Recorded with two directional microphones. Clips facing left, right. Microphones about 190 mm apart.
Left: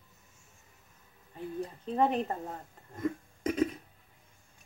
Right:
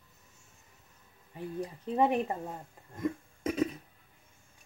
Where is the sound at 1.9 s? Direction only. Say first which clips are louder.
Right 1 dB; 15° right (ahead or behind).